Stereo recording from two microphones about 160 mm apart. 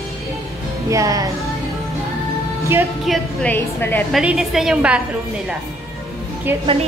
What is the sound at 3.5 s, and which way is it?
Speech, 10° left (ahead or behind).